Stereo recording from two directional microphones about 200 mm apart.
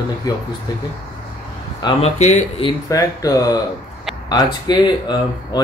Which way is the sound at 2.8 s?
15° left (ahead or behind).